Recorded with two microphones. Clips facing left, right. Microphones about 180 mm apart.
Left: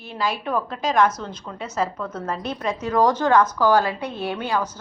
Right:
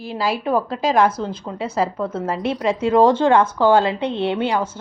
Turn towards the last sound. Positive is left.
turn(degrees=-25)  # may be behind; listen again after turning